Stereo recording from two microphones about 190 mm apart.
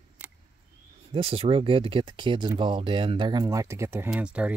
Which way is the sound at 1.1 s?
30° right (ahead or behind).